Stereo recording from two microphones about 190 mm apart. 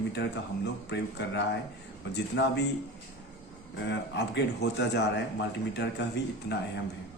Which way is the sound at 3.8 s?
65° left (ahead or behind).